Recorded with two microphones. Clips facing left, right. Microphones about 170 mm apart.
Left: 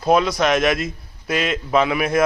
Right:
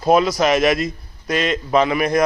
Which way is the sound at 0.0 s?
Centre (ahead or behind).